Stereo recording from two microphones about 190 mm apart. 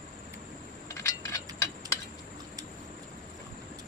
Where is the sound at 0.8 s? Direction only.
15° left (ahead or behind).